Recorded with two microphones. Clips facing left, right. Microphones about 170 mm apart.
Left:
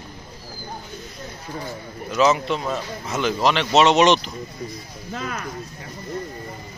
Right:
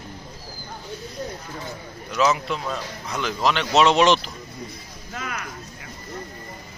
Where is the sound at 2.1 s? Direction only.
Centre (ahead or behind).